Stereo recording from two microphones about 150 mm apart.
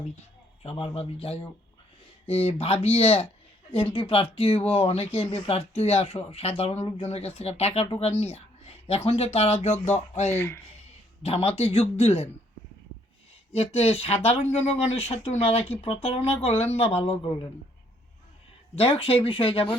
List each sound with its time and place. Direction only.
0.6 s speech: 40° left (ahead or behind)
10.2 s speech: 15° left (ahead or behind)
11.2 s speech: 40° left (ahead or behind)
13.5 s speech: 45° left (ahead or behind)
18.8 s speech: 40° left (ahead or behind)